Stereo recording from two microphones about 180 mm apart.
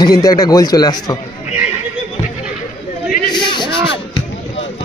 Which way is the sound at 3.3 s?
25° left (ahead or behind).